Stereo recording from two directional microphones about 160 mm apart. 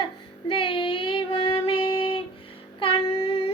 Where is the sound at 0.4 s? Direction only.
30° left (ahead or behind).